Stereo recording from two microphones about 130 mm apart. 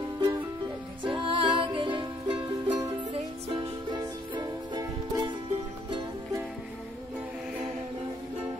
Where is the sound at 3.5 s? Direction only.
35° right (ahead or behind).